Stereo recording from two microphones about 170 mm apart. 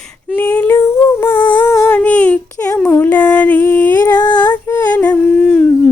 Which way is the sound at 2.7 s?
10° left (ahead or behind).